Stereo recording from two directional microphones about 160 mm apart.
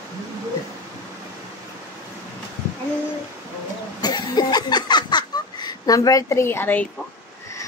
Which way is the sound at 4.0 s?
25° left (ahead or behind).